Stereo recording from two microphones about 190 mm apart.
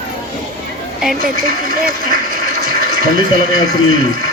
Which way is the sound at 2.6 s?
50° right (ahead or behind).